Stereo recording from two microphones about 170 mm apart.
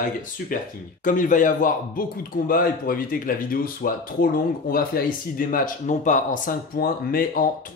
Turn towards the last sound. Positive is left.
turn(degrees=60)  # may be behind; listen again after turning